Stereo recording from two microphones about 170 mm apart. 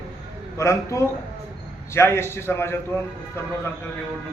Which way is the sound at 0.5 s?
15° left (ahead or behind).